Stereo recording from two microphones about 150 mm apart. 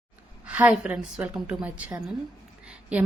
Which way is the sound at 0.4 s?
10° right (ahead or behind).